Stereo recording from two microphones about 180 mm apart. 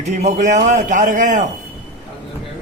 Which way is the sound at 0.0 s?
40° right (ahead or behind).